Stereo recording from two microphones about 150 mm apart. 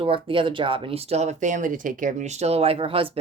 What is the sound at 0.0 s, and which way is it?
Speech, 35° right (ahead or behind).